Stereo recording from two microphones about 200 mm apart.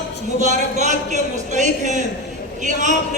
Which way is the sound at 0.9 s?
35° right (ahead or behind).